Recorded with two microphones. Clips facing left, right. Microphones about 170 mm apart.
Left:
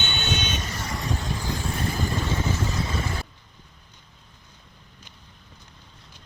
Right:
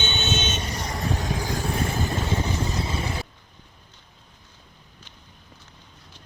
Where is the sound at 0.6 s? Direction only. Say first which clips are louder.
Right 2 dB; 35° right (ahead or behind).